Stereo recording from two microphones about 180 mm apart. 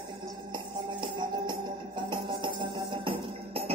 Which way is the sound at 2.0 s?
25° right (ahead or behind).